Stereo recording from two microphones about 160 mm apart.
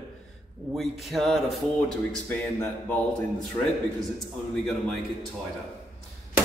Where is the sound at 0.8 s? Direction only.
Centre (ahead or behind).